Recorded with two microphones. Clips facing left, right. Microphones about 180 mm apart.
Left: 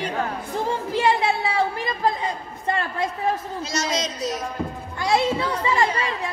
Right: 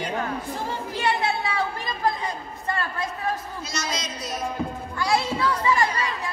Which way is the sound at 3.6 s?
40° left (ahead or behind).